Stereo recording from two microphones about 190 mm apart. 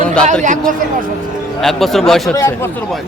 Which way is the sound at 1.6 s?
Centre (ahead or behind).